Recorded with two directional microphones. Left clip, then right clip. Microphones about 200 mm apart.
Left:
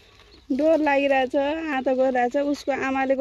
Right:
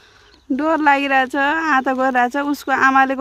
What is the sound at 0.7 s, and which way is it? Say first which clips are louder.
Speech: right 5 dB; 75° right (ahead or behind).